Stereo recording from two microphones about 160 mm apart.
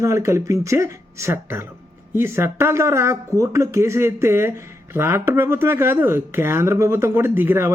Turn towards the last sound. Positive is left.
turn(degrees=-15)  # may be behind; listen again after turning